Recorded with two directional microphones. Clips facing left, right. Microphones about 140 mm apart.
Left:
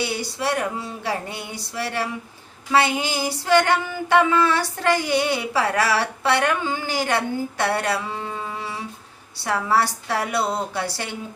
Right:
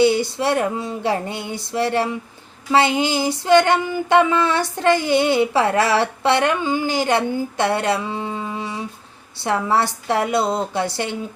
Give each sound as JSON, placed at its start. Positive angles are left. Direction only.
{"t": 0.0, "sound": "female singing", "side_deg": -25}